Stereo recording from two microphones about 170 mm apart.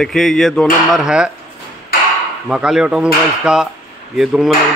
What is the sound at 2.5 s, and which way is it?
Speech, 5° right (ahead or behind).